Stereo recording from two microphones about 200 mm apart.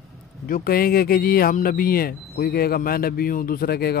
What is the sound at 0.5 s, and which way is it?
Speech, 45° left (ahead or behind).